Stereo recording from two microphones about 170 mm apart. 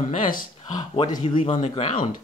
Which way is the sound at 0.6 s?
25° left (ahead or behind).